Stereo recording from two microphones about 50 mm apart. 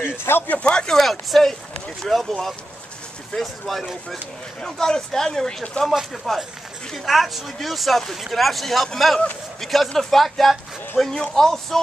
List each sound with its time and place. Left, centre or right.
0.1 s speech: left
0.5 s speech: left
0.8 s speech: centre